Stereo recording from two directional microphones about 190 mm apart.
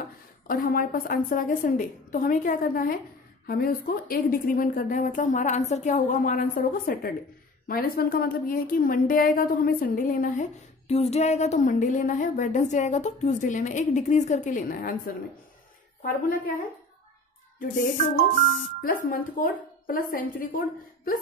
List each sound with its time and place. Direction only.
0.5 s a woman's voice: 50° left (ahead or behind)
10.9 s speech: 35° left (ahead or behind)
16.0 s a woman's voice: 45° left (ahead or behind)
17.6 s a woman's voice: 45° left (ahead or behind)